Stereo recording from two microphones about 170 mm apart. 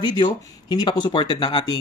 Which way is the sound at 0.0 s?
25° left (ahead or behind).